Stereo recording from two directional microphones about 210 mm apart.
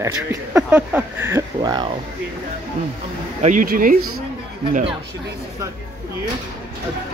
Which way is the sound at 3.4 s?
40° right (ahead or behind).